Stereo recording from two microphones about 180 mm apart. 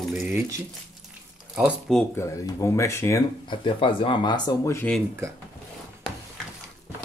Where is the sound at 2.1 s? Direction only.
15° left (ahead or behind).